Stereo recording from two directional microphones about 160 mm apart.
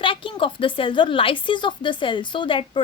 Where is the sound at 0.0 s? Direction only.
30° left (ahead or behind).